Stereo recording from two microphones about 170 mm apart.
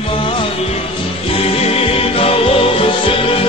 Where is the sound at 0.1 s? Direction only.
30° left (ahead or behind).